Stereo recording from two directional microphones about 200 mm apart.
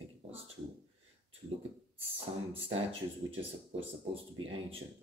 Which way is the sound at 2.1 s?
30° right (ahead or behind).